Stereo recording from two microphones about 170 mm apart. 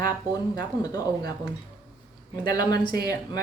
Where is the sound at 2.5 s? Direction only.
20° left (ahead or behind).